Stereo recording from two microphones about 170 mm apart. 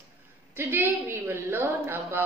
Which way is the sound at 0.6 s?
10° right (ahead or behind).